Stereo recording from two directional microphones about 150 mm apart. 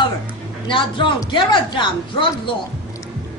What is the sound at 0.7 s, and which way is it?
A woman's voice, 35° left (ahead or behind).